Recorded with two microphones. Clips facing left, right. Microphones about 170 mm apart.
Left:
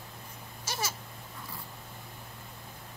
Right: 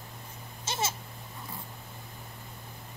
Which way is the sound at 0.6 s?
25° right (ahead or behind).